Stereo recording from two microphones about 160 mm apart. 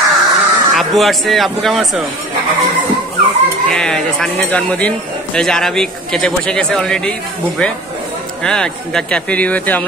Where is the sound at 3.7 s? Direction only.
5° left (ahead or behind).